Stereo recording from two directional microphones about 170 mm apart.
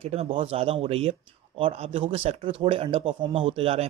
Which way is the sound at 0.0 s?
35° right (ahead or behind).